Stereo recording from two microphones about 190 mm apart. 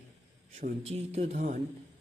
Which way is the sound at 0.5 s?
35° right (ahead or behind).